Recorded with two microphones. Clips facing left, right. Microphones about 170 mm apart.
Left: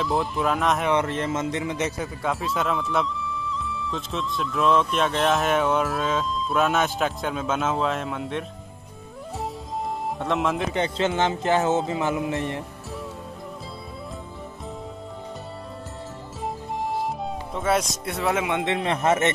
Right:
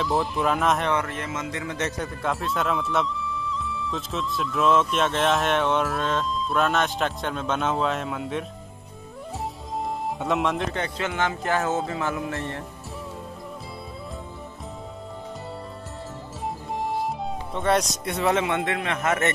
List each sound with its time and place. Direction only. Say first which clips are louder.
0.0 s a man's voice: even; centre (ahead or behind)
1.0 s a man's voice: left 5 dB; 30° left (ahead or behind); by 8.5 s centre (ahead or behind)
10.1 s a man's voice: even; centre (ahead or behind)
10.7 s speech: left 5 dB; 25° left (ahead or behind)
16.9 s speech: even; centre (ahead or behind); by 19.3 s 25° left (ahead or behind)